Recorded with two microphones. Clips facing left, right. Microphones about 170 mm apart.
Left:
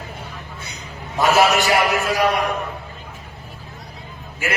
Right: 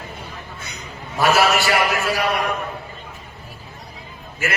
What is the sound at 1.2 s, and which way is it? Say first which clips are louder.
Speech: left 1 dB; 15° left (ahead or behind).